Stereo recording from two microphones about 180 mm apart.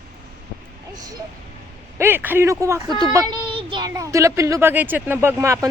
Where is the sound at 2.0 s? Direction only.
10° right (ahead or behind).